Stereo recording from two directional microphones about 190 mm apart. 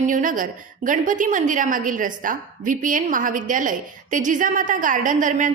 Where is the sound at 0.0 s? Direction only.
45° right (ahead or behind).